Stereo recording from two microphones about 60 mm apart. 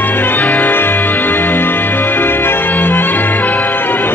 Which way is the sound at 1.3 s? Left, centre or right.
Left.